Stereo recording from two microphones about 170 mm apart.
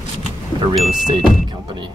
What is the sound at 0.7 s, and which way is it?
Speech, centre (ahead or behind).